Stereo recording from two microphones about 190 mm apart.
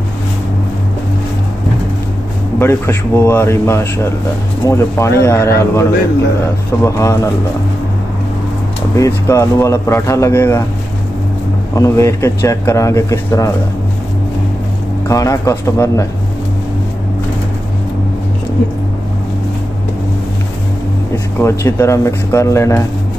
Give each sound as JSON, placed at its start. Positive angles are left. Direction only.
{"t": 2.6, "sound": "speech", "side_deg": 10}
{"t": 8.9, "sound": "speech", "side_deg": 15}
{"t": 11.7, "sound": "speech", "side_deg": 15}
{"t": 15.0, "sound": "speech", "side_deg": 15}
{"t": 21.4, "sound": "speech", "side_deg": 15}